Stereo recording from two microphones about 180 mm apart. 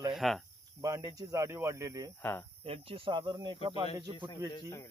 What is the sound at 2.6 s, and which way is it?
Speech, 30° right (ahead or behind).